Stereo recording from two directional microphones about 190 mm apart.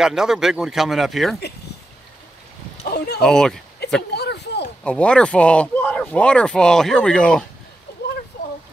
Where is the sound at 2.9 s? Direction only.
55° left (ahead or behind).